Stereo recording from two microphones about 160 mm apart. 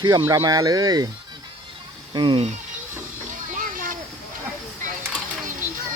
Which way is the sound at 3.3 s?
55° right (ahead or behind).